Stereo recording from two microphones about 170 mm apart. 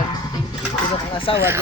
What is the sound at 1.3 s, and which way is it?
Speech, 30° left (ahead or behind).